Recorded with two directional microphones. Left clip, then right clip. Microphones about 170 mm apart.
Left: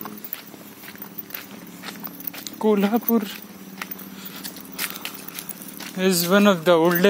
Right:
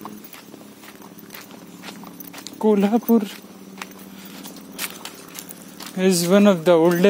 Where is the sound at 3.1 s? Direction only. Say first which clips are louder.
Right 4 dB; 40° right (ahead or behind).